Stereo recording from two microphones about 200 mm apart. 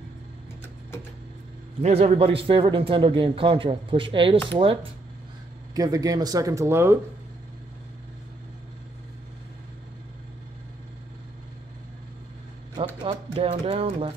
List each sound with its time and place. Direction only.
1.8 s a man's voice: 30° right (ahead or behind)
5.8 s speech: 15° right (ahead or behind)
12.7 s a sound: 25° right (ahead or behind)